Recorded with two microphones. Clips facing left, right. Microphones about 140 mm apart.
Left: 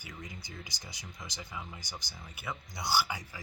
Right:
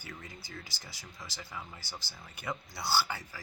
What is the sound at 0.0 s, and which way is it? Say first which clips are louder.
Speech: left 1 dB; 15° left (ahead or behind).